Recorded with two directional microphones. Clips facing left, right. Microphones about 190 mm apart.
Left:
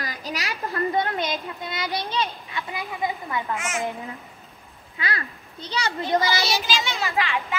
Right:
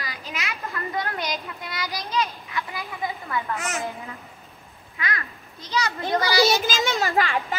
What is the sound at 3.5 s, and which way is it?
Speech, 40° right (ahead or behind).